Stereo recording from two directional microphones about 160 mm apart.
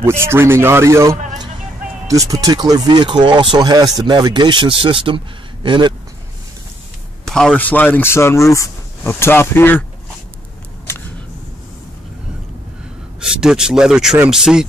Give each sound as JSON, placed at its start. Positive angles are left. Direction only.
{"t": 0.0, "sound": "speech", "side_deg": -15}
{"t": 7.2, "sound": "speech", "side_deg": 5}
{"t": 13.2, "sound": "speech", "side_deg": -5}